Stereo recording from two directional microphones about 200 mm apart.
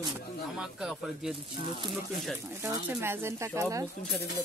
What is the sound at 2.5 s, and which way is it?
Speech, 10° right (ahead or behind).